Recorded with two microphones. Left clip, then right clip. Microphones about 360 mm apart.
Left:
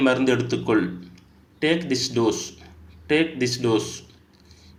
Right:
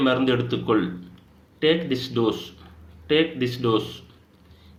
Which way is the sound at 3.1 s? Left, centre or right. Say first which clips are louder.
Even; centre.